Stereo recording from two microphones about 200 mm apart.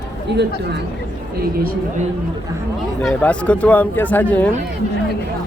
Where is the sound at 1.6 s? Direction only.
45° right (ahead or behind).